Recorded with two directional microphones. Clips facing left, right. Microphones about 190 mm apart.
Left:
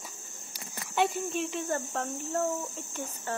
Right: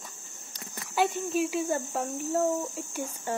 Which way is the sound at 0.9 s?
5° right (ahead or behind).